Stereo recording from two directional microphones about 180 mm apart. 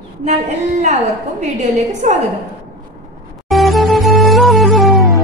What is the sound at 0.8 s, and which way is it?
A woman's voice, 40° right (ahead or behind).